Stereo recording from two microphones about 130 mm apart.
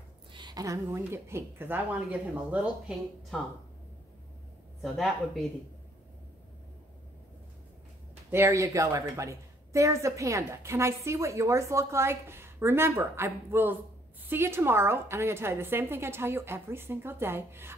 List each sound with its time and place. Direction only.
0.3 s a woman's voice: 35° right (ahead or behind); by 3.0 s 10° right (ahead or behind)
4.8 s a woman's voice: centre (ahead or behind)
8.3 s a woman's voice: 20° right (ahead or behind)